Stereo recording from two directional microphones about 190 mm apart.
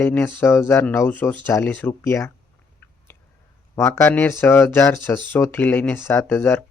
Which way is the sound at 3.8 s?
15° left (ahead or behind).